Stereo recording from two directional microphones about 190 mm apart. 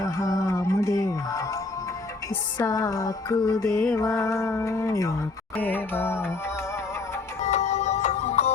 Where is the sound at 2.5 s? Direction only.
15° left (ahead or behind).